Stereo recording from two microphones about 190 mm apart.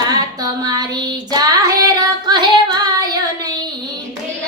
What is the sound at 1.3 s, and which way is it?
Child singing, 20° right (ahead or behind).